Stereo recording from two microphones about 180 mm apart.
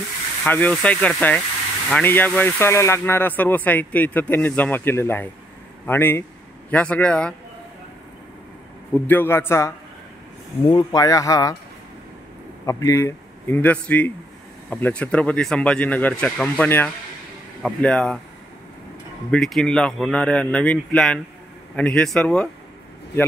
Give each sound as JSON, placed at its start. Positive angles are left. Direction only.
{"t": 0.5, "sound": "speech", "side_deg": 10}
{"t": 8.9, "sound": "speech", "side_deg": 10}
{"t": 12.6, "sound": "a man's voice", "side_deg": 15}
{"t": 19.3, "sound": "speech", "side_deg": 5}